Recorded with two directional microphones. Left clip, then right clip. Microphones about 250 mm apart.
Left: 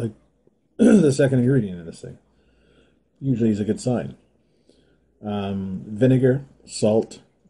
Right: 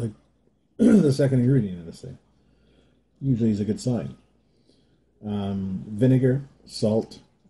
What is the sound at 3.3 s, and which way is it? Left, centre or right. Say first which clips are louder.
Speech: left 4 dB; centre.